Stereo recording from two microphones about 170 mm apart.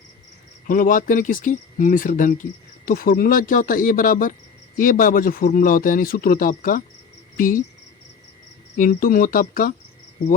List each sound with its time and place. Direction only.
0.7 s speech: 55° left (ahead or behind)
8.8 s speech: 60° left (ahead or behind)